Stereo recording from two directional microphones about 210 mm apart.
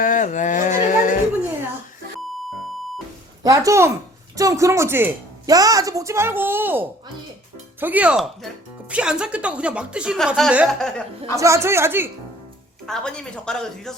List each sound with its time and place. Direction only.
0.0 s speech: 40° left (ahead or behind)
3.4 s speech: 15° right (ahead or behind); by 11.0 s centre (ahead or behind)
11.3 s speech: 15° right (ahead or behind)
12.8 s speech: 5° left (ahead or behind)